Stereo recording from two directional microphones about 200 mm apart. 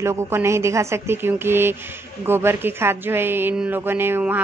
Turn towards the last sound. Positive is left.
turn(degrees=-10)  # may be behind; listen again after turning